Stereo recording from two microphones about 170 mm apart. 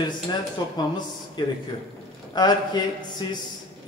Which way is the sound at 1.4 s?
25° left (ahead or behind).